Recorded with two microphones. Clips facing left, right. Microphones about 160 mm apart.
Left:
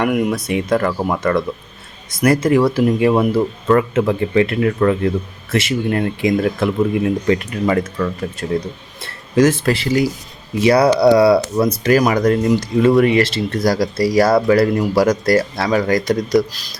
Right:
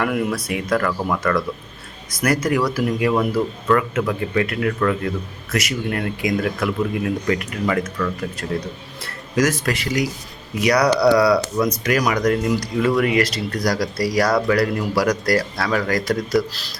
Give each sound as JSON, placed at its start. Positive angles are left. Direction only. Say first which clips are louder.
{"t": 0.0, "sound": "speech", "louder": "left 4 dB", "side_deg": 20}